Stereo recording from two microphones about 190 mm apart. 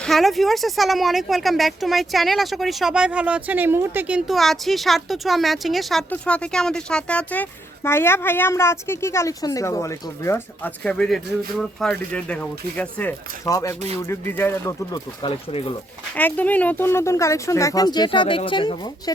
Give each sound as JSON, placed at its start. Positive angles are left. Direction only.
{"t": 0.0, "sound": "a woman's voice", "side_deg": 0}
{"t": 16.1, "sound": "a woman's voice", "side_deg": 10}